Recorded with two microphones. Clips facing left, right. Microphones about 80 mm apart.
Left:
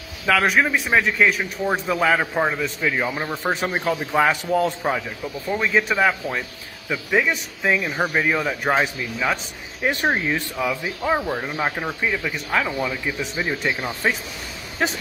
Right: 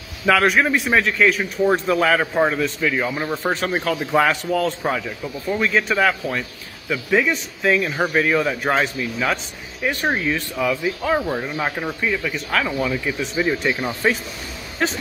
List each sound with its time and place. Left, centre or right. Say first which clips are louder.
0.3 s a man's voice: right 2 dB; centre
4.5 s speech: even; centre
4.8 s speech: right 1 dB; centre
9.8 s speech: even; left
10.5 s a man's voice: right 3 dB; centre
14.8 s speech: right 1 dB; centre